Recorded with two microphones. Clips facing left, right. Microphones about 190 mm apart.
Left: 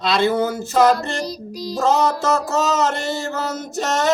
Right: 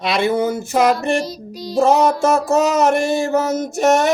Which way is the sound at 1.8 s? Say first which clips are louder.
Right 4 dB; 15° right (ahead or behind).